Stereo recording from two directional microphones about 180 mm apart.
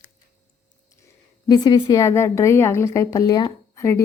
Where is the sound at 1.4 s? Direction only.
20° left (ahead or behind).